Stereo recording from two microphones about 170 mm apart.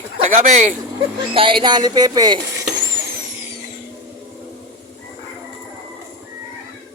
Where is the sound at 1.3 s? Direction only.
30° right (ahead or behind).